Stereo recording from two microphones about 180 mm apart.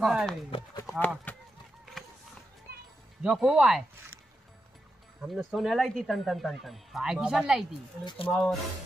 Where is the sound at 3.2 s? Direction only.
5° right (ahead or behind).